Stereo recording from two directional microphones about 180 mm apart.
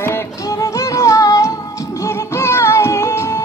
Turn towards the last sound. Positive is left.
turn(degrees=15)  # may be behind; listen again after turning